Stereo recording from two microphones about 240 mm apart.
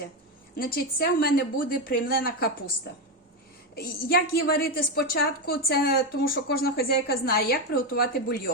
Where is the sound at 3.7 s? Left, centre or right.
Left.